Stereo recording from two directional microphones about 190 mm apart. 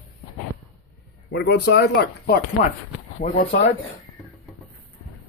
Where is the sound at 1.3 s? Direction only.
60° left (ahead or behind).